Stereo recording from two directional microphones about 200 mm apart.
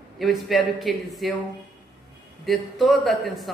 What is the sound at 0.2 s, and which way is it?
A woman's voice, centre (ahead or behind).